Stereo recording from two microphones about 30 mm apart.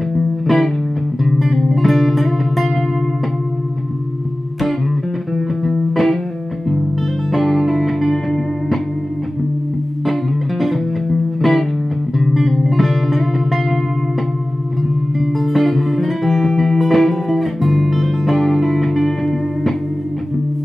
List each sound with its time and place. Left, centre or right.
0.1 s music: centre
1.7 s music: centre
5.3 s music: centre
7.6 s music: centre
10.6 s music: centre
12.6 s music: centre
15.1 s music: centre